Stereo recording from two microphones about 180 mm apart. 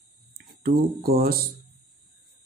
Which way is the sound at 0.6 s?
55° right (ahead or behind).